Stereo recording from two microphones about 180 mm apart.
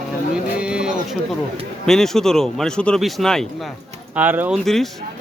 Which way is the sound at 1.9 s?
Centre (ahead or behind).